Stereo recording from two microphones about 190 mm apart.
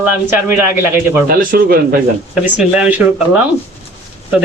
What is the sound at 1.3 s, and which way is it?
Speech, 50° right (ahead or behind).